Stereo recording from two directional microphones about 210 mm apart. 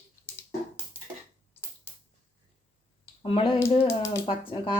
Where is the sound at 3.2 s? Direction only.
25° left (ahead or behind).